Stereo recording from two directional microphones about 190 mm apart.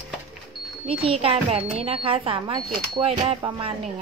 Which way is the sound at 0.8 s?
30° right (ahead or behind).